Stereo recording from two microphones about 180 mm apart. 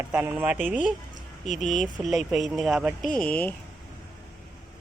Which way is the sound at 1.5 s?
45° left (ahead or behind).